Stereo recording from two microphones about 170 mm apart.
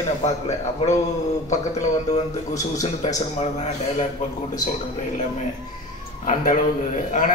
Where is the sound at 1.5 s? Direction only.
45° left (ahead or behind).